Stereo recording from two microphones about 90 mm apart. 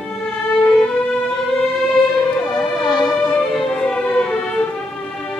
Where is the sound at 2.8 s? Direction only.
55° left (ahead or behind).